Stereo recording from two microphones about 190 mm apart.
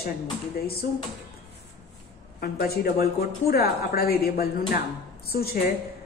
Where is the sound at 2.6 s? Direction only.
55° left (ahead or behind).